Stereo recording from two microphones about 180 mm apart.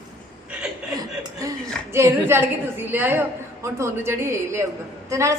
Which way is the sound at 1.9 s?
15° right (ahead or behind).